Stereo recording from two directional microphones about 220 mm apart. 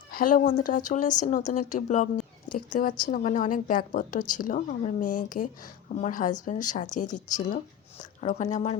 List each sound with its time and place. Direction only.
0.1 s a woman's voice: 40° left (ahead or behind)